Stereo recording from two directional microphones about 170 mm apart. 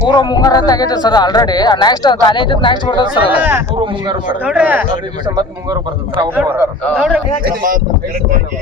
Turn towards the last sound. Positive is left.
turn(degrees=-55)  # may be behind; listen again after turning